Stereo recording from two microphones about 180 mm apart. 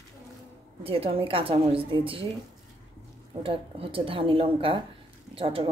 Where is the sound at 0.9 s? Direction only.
30° right (ahead or behind).